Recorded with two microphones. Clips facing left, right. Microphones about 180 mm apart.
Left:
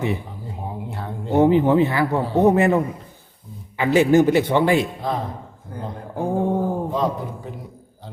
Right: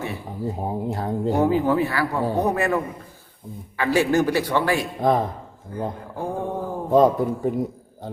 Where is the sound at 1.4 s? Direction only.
20° left (ahead or behind).